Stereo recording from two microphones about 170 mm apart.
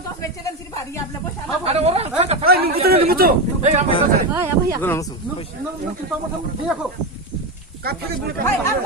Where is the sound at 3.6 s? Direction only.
40° right (ahead or behind).